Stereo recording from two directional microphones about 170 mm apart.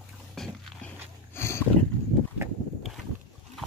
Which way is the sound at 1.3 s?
15° left (ahead or behind).